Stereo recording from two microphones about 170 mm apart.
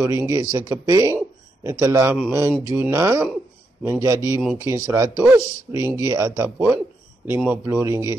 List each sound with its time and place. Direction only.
0.0 s a man's voice: 15° right (ahead or behind)